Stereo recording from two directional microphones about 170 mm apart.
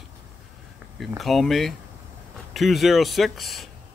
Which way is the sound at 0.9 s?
Centre (ahead or behind).